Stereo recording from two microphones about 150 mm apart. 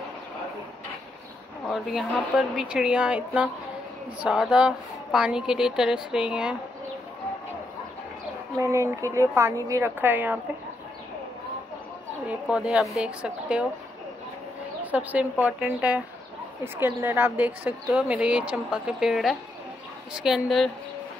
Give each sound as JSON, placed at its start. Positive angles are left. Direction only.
{"t": 1.7, "sound": "speech", "side_deg": 0}
{"t": 8.5, "sound": "a woman's voice", "side_deg": -20}
{"t": 12.3, "sound": "a woman's voice", "side_deg": -5}
{"t": 14.8, "sound": "a woman's voice", "side_deg": -10}